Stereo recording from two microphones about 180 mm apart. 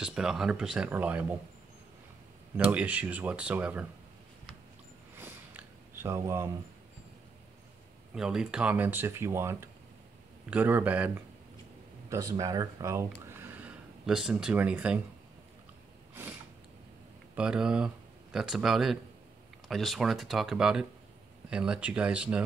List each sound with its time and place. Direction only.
0.0 s speech: 5° right (ahead or behind)
2.5 s speech: 10° right (ahead or behind)
5.1 s a sound: 10° right (ahead or behind)
8.1 s speech: 5° right (ahead or behind)
12.1 s speech: 20° right (ahead or behind)
13.4 s a sound: 10° right (ahead or behind)
17.4 s speech: 5° right (ahead or behind)